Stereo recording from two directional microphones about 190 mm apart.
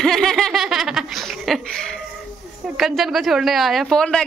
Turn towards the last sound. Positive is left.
turn(degrees=5)  # may be behind; listen again after turning